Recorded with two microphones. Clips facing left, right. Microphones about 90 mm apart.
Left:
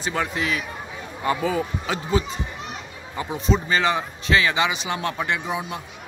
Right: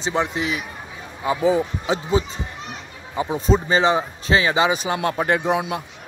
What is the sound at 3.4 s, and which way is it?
Speech, 40° right (ahead or behind).